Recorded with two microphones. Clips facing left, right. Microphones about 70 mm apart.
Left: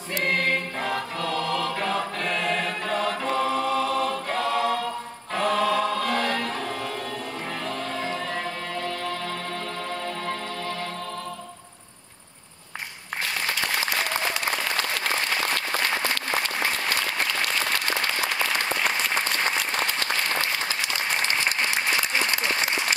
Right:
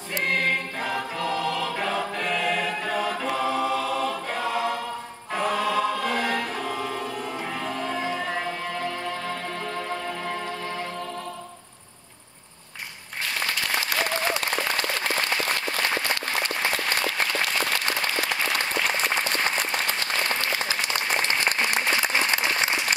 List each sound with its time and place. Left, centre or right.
0.7 s choir: centre
7.6 s music: centre